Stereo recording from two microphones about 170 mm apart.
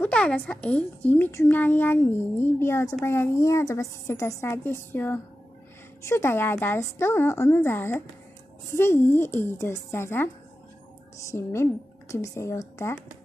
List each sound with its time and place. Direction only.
0.0 s a woman's voice: 5° left (ahead or behind)